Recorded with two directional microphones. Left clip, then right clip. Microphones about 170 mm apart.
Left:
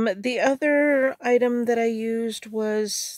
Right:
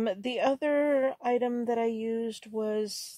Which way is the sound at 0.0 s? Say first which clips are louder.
Left 6 dB; 35° left (ahead or behind).